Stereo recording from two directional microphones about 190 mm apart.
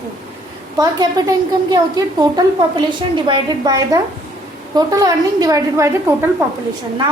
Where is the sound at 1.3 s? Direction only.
20° right (ahead or behind).